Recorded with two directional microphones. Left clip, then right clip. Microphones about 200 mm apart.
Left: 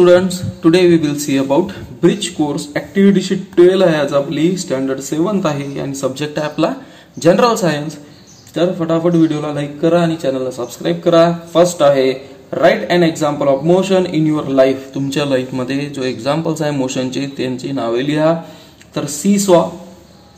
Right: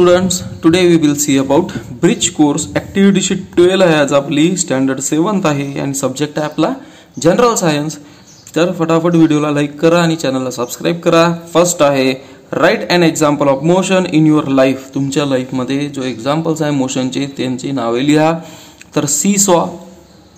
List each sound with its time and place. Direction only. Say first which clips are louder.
0.0 s a man's voice: left 1 dB; 15° right (ahead or behind); by 19.6 s 30° right (ahead or behind)